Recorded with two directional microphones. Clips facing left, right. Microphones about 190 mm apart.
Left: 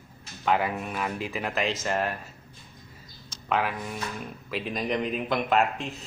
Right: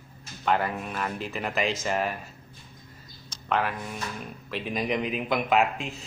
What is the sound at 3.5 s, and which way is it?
Speech, 5° left (ahead or behind).